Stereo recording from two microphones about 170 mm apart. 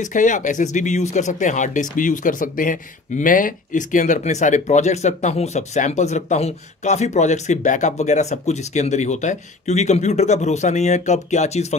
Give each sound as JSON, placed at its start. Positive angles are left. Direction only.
{"t": 0.0, "sound": "speech", "side_deg": 45}